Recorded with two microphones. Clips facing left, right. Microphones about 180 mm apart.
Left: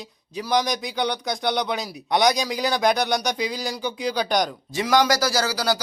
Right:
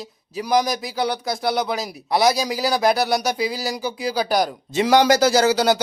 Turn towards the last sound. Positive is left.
turn(degrees=-25)  # may be behind; listen again after turning